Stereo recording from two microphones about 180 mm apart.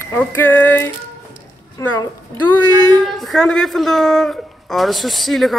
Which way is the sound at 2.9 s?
Centre (ahead or behind).